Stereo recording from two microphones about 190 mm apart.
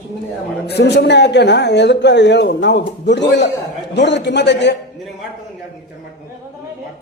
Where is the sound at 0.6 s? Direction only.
60° left (ahead or behind).